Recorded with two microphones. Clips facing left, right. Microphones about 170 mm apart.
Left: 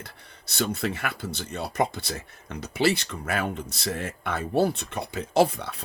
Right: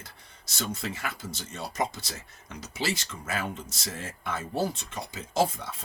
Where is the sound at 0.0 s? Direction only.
60° left (ahead or behind).